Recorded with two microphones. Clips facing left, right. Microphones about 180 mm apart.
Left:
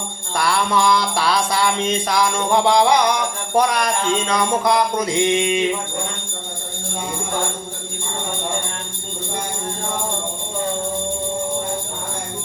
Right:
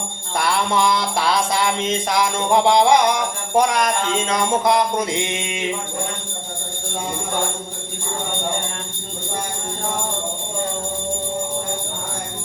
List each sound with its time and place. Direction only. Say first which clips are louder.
0.3 s music: left 1 dB; 20° right (ahead or behind)